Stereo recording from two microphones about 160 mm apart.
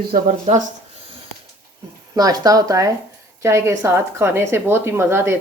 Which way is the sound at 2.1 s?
25° right (ahead or behind).